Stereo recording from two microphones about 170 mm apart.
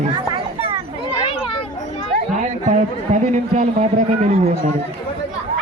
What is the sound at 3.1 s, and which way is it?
Speech, 35° right (ahead or behind).